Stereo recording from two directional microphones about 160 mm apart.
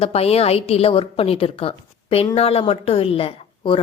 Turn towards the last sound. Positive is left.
turn(degrees=35)  # may be behind; listen again after turning